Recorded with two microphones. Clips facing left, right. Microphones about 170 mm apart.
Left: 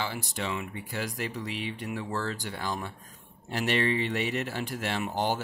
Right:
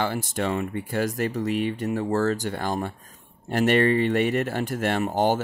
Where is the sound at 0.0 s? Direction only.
50° right (ahead or behind).